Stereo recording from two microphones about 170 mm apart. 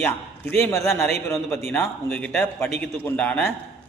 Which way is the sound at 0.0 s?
15° left (ahead or behind).